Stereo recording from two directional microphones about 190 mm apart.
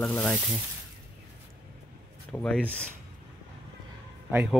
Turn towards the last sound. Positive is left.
turn(degrees=-5)  # may be behind; listen again after turning